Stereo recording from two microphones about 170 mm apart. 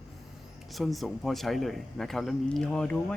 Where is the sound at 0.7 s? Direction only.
Centre (ahead or behind).